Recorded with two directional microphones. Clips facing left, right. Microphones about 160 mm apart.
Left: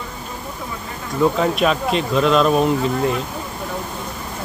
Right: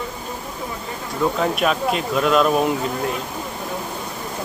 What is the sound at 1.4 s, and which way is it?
Speech, 5° right (ahead or behind).